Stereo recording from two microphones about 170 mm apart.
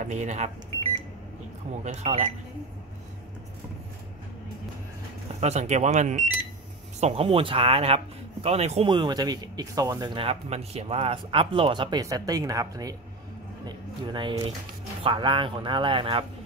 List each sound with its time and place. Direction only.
0.0 s speech: 45° right (ahead or behind)
1.9 s speech: 40° right (ahead or behind)
5.4 s speech: 40° right (ahead or behind)
8.9 s speech: 25° right (ahead or behind)